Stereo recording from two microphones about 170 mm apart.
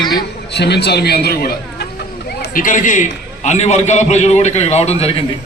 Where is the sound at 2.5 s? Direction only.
50° left (ahead or behind).